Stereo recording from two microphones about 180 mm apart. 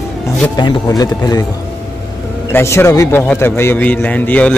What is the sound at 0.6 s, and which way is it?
Speech, 20° left (ahead or behind).